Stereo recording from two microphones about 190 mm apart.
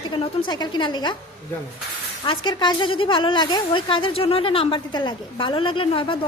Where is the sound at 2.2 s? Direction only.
25° left (ahead or behind).